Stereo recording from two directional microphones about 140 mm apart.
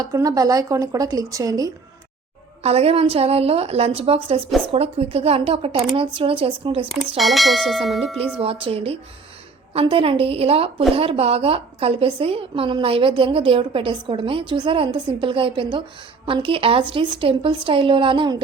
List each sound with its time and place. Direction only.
0.0 s speech: 25° right (ahead or behind)
2.6 s a woman's voice: 45° right (ahead or behind)
7.2 s bell: centre (ahead or behind)
8.4 s a woman's voice: 45° right (ahead or behind)